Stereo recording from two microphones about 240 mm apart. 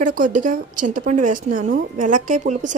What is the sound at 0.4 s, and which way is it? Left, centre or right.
A woman's voice, right.